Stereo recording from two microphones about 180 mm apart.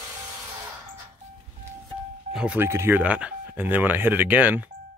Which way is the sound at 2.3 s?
10° right (ahead or behind).